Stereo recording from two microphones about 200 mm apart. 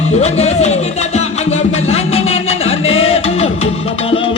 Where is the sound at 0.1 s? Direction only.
30° left (ahead or behind).